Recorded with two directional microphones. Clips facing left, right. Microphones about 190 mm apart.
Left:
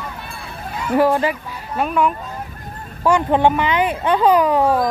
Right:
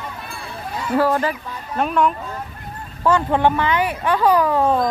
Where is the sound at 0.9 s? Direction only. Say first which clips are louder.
Left 3 dB; 10° left (ahead or behind).